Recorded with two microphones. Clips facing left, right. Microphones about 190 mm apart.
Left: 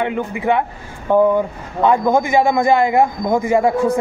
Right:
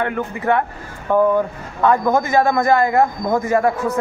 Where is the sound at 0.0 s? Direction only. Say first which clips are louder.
Left 2 dB; 20° left (ahead or behind).